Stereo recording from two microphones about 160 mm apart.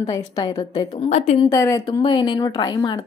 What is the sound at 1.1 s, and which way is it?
Speech, 45° left (ahead or behind).